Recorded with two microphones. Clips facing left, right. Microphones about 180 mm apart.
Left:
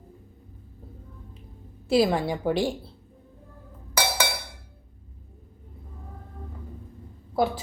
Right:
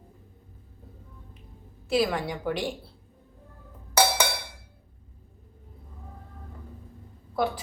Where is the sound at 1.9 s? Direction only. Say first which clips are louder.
Left 4 dB; 30° left (ahead or behind).